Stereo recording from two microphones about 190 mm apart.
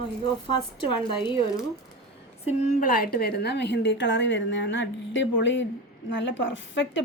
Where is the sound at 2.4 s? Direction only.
45° left (ahead or behind).